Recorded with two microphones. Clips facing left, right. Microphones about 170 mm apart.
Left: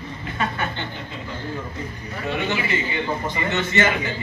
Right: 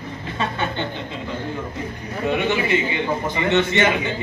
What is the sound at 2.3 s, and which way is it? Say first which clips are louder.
A man's voice: right 4 dB; 15° right (ahead or behind).